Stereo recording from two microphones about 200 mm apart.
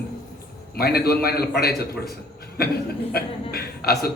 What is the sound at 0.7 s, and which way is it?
A man's voice, 50° left (ahead or behind).